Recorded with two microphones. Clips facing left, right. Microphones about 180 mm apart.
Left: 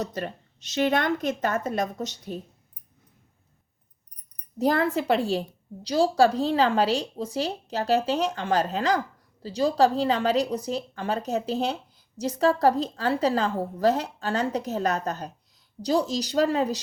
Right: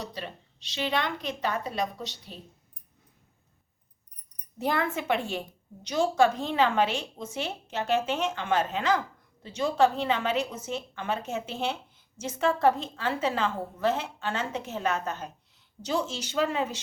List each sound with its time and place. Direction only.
0.0 s a woman's voice: 45° left (ahead or behind)
4.5 s a woman's voice: 40° left (ahead or behind)